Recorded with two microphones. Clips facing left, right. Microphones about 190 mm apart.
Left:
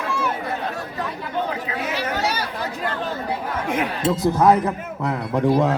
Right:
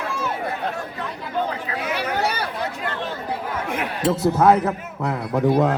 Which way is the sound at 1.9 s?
55° right (ahead or behind).